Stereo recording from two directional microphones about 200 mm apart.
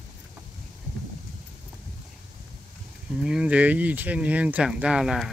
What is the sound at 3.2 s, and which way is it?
Speech, 5° right (ahead or behind).